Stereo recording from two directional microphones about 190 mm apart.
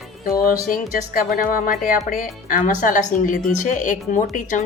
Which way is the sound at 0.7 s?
45° left (ahead or behind).